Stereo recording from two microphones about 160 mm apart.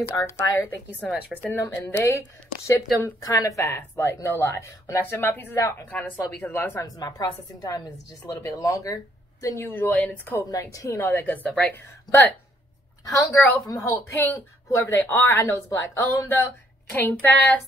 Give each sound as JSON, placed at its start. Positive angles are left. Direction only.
{"t": 0.1, "sound": "speech", "side_deg": 20}